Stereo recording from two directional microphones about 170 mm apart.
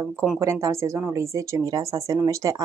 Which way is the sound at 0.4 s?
15° right (ahead or behind).